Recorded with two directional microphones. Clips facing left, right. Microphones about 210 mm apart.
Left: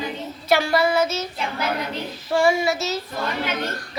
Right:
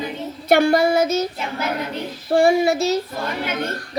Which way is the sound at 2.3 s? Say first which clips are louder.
Right 4 dB; 60° right (ahead or behind).